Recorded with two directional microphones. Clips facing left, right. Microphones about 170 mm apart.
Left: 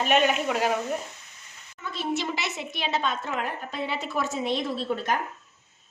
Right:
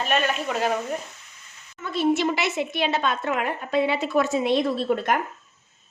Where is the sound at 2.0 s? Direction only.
60° right (ahead or behind).